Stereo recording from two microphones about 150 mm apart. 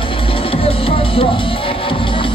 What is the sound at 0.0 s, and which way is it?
Music, 35° left (ahead or behind).